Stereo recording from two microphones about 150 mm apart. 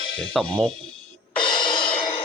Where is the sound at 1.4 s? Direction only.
30° left (ahead or behind).